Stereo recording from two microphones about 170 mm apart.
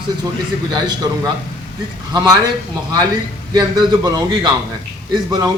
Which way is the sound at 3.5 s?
25° right (ahead or behind).